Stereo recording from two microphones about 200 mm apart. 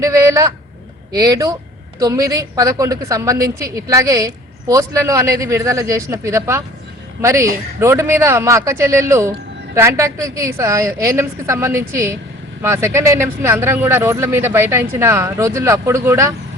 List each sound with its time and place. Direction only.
0.0 s speech: 15° right (ahead or behind)